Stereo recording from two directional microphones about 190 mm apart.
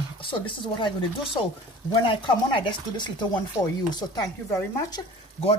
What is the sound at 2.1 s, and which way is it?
Speech, 25° left (ahead or behind).